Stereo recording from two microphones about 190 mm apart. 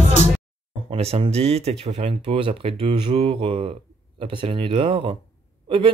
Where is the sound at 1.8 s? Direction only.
35° right (ahead or behind).